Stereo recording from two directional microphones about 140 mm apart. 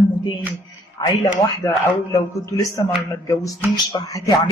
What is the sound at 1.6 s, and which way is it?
A man's voice, 15° left (ahead or behind).